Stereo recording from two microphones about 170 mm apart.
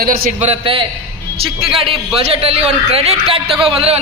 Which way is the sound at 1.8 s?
35° right (ahead or behind).